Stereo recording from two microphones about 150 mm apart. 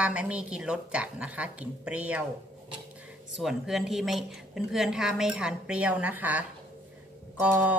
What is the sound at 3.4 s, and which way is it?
A woman's voice, centre (ahead or behind).